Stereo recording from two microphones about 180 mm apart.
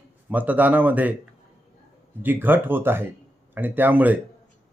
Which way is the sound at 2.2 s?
10° right (ahead or behind).